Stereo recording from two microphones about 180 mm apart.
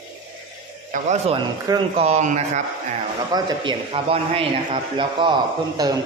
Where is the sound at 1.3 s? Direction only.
30° right (ahead or behind).